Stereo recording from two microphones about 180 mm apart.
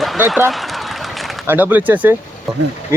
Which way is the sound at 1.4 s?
10° right (ahead or behind).